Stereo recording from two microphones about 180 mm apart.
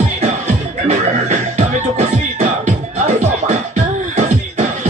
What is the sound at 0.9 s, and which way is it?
Music, 40° right (ahead or behind).